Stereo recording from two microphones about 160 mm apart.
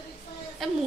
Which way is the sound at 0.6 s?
Centre (ahead or behind).